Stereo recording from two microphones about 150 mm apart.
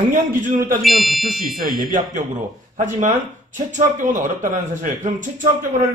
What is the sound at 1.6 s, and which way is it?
Speech, 65° right (ahead or behind).